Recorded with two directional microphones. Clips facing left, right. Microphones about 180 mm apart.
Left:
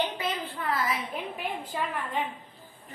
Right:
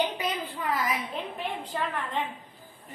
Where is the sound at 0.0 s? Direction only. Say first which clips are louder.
Right 1 dB; 15° right (ahead or behind).